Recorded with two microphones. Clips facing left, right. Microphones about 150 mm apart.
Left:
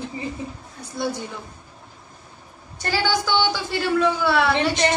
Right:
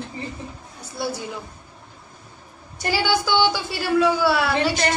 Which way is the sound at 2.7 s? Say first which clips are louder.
Right 1 dB; 10° right (ahead or behind).